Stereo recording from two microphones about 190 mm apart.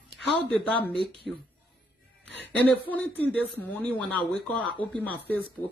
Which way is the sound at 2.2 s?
65° left (ahead or behind).